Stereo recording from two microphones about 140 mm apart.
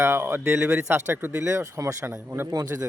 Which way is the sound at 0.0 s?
20° right (ahead or behind).